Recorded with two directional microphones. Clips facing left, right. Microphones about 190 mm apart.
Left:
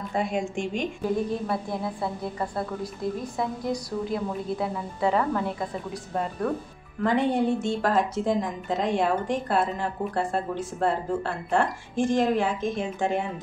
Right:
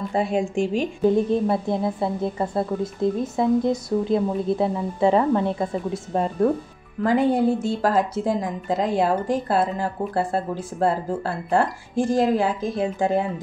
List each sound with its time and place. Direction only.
0.1 s a woman's voice: 35° right (ahead or behind)